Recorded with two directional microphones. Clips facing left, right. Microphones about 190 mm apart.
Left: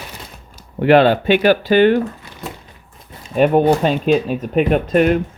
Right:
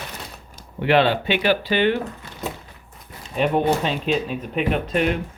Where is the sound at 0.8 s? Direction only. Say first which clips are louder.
Left 6 dB; 45° left (ahead or behind).